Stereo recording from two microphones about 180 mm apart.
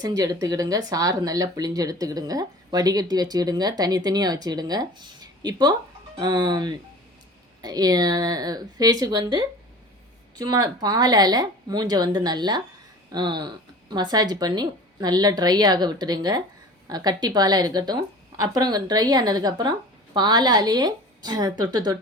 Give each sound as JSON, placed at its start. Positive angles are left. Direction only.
{"t": 0.0, "sound": "speech", "side_deg": -20}